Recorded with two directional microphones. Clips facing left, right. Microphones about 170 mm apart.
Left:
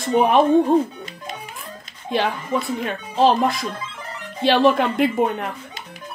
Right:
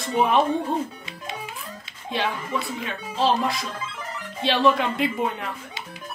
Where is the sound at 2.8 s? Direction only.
50° left (ahead or behind).